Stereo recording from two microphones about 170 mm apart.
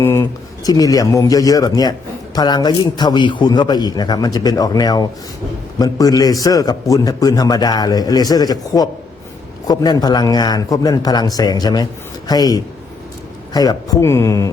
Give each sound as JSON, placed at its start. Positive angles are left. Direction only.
{"t": 0.0, "sound": "a man's voice", "side_deg": 15}